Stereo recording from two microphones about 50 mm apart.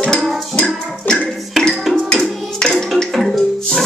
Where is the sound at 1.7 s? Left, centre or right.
Centre.